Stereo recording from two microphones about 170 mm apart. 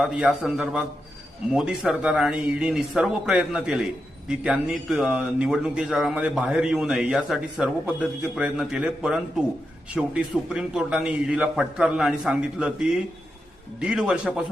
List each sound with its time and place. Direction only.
0.0 s speech: 5° right (ahead or behind)